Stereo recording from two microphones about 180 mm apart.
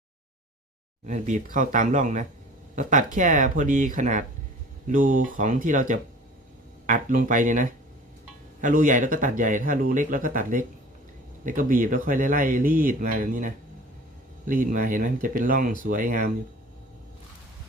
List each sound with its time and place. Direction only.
1.0 s speech: 45° right (ahead or behind)